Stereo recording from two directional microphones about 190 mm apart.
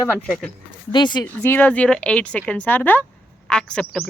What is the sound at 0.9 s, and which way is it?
Speech, 25° left (ahead or behind).